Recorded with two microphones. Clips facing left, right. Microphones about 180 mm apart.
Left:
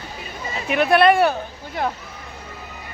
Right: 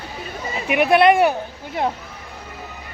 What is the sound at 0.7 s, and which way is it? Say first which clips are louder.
Speech: right 1 dB; 15° right (ahead or behind).